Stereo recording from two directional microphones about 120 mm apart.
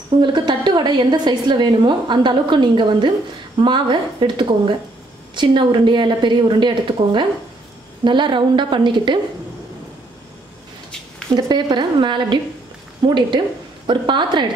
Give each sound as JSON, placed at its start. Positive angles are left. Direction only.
{"t": 0.2, "sound": "a woman's voice", "side_deg": -40}
{"t": 11.3, "sound": "a woman's voice", "side_deg": -35}